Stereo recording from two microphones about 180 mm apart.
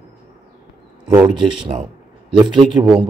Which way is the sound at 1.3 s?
25° right (ahead or behind).